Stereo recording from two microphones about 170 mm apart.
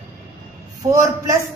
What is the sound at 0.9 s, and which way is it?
Speech, 20° right (ahead or behind).